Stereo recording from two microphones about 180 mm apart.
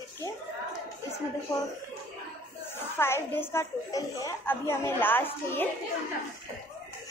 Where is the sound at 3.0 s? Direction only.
15° left (ahead or behind).